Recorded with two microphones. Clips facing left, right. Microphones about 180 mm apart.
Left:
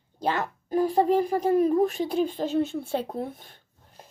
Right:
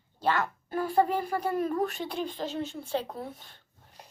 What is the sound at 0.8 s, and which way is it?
Speech, 40° left (ahead or behind).